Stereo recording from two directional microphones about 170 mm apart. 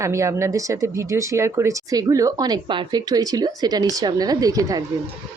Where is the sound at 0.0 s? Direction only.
15° right (ahead or behind).